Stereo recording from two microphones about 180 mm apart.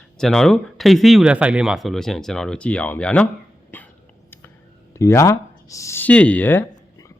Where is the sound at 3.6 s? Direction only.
10° left (ahead or behind).